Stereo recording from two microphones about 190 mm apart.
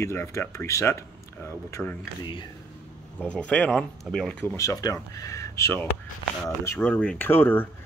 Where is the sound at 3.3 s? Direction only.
5° left (ahead or behind).